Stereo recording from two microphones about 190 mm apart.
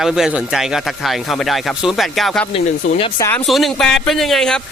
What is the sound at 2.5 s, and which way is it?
Speech, 30° left (ahead or behind).